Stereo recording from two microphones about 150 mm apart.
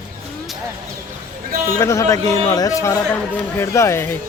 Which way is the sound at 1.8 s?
20° left (ahead or behind).